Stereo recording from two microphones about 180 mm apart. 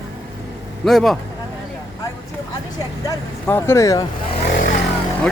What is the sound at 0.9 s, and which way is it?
Speech, centre (ahead or behind).